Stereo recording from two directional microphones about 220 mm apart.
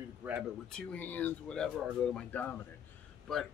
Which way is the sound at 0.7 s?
5° left (ahead or behind).